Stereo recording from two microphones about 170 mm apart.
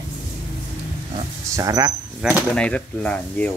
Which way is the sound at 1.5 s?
20° right (ahead or behind).